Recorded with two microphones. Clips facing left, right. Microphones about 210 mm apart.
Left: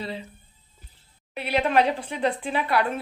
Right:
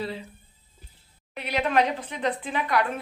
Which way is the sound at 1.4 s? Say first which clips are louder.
Left 2 dB; 30° left (ahead or behind).